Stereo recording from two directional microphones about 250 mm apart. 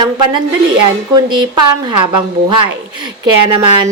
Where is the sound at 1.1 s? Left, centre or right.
Centre.